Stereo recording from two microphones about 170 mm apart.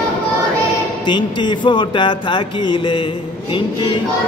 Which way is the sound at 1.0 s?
25° left (ahead or behind).